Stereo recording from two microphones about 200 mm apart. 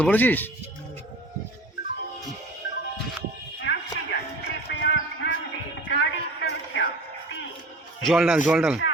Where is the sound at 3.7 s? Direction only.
60° left (ahead or behind).